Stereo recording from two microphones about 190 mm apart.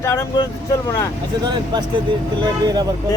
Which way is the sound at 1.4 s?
25° right (ahead or behind).